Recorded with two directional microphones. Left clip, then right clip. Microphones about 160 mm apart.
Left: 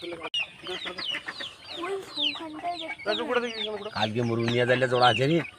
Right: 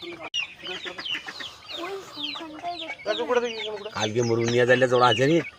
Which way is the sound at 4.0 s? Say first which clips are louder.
Right 4 dB; 75° right (ahead or behind).